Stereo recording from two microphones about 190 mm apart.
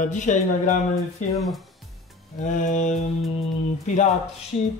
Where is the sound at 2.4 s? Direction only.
40° left (ahead or behind).